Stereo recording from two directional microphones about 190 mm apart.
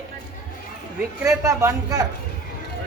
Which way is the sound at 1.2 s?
15° right (ahead or behind).